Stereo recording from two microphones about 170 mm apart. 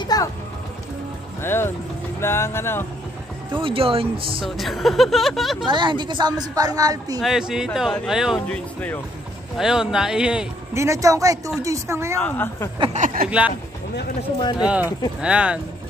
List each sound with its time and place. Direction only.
0.0 s music: 20° left (ahead or behind)
1.4 s speech: 15° left (ahead or behind)
3.6 s speech: 35° right (ahead or behind)
4.5 s speech: centre (ahead or behind)
5.7 s speech: 25° right (ahead or behind)
7.2 s speech: centre (ahead or behind)
9.6 s speech: 5° right (ahead or behind)
10.7 s speech: 15° right (ahead or behind)
12.2 s speech: 10° left (ahead or behind)
12.9 s speech: 50° right (ahead or behind)
14.7 s speech: 10° right (ahead or behind)